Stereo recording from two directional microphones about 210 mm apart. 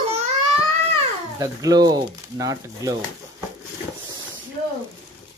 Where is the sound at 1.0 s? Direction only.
15° right (ahead or behind).